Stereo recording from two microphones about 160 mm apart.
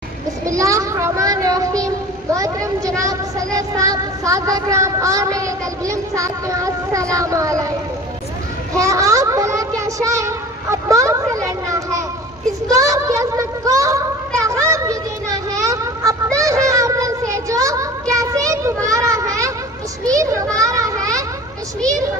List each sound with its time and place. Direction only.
0.5 s child singing: 20° right (ahead or behind)
2.3 s a sound: 20° right (ahead or behind)
3.0 s child singing: 20° right (ahead or behind)
8.7 s child singing: 20° right (ahead or behind)
12.6 s a sound: 20° right (ahead or behind)
20.1 s child singing: 20° right (ahead or behind)